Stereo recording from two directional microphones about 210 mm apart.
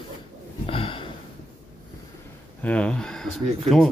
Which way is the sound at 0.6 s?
25° left (ahead or behind).